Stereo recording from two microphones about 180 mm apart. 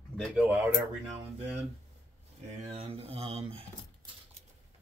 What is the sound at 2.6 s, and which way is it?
Speech, 35° right (ahead or behind).